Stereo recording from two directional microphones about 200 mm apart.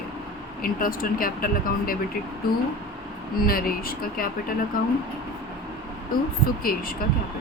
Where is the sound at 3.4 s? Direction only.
45° left (ahead or behind).